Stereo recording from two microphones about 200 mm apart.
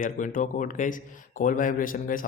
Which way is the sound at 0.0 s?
45° left (ahead or behind).